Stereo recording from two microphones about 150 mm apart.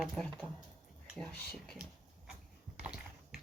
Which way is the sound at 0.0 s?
Centre (ahead or behind).